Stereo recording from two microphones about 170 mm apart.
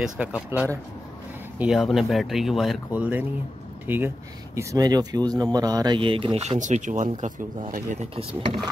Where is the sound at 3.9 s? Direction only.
10° right (ahead or behind); by 8.0 s 50° right (ahead or behind).